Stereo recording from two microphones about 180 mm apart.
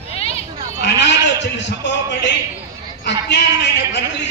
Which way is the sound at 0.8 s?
75° left (ahead or behind).